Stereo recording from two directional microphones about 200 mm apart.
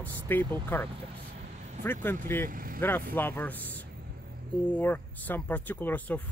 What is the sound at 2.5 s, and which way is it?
Speech, 45° right (ahead or behind).